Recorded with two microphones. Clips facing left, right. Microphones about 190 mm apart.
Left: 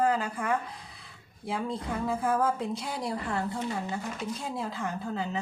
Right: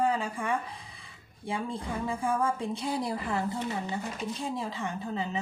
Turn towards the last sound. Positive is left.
turn(degrees=0)  # may be behind; listen again after turning